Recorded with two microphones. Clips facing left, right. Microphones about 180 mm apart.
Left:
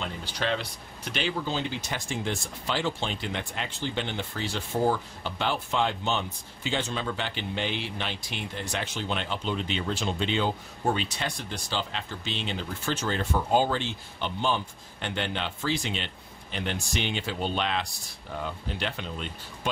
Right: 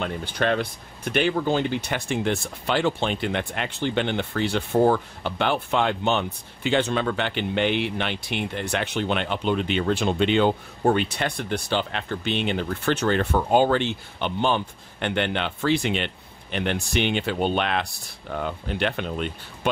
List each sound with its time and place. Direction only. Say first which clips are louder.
0.0 s speech: right 7 dB; 55° right (ahead or behind)